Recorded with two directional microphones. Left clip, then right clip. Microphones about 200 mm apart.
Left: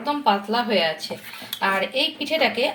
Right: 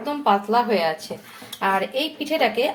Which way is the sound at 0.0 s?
10° right (ahead or behind).